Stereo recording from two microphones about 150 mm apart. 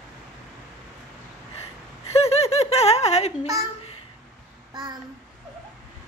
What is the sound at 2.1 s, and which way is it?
Snicker, 45° left (ahead or behind).